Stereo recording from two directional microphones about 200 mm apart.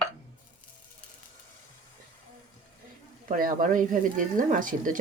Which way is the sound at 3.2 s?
45° right (ahead or behind).